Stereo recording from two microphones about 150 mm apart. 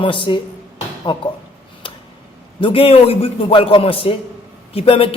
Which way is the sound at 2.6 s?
35° left (ahead or behind).